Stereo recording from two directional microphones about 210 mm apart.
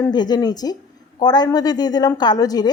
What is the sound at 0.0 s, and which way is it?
A woman's voice, 20° left (ahead or behind).